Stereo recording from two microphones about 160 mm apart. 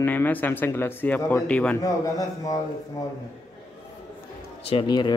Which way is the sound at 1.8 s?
20° left (ahead or behind).